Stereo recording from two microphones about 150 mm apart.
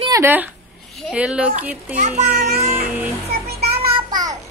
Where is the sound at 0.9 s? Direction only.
5° right (ahead or behind).